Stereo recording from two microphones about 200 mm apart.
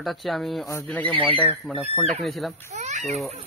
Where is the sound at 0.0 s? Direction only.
Centre (ahead or behind).